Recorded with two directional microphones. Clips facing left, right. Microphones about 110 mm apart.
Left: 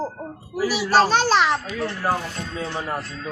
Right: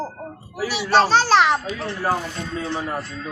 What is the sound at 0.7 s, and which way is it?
Speech, 5° left (ahead or behind).